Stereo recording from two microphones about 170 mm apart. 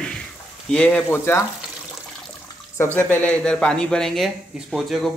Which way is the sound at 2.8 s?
10° left (ahead or behind).